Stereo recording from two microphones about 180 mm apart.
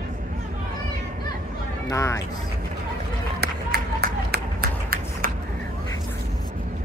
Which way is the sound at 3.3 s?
60° right (ahead or behind).